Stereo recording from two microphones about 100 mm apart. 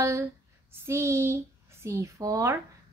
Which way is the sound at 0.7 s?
25° right (ahead or behind).